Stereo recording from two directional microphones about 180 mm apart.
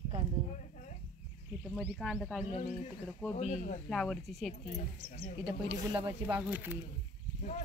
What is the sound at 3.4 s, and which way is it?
Speech, 45° left (ahead or behind).